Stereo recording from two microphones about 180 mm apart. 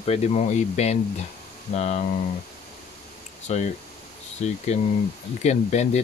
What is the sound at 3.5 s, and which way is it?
Speech, 40° left (ahead or behind).